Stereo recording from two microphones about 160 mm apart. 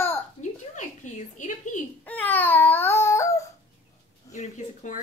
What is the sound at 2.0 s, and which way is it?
Baby cry, 10° left (ahead or behind).